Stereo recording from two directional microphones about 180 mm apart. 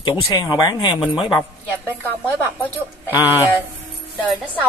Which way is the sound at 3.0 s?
10° right (ahead or behind).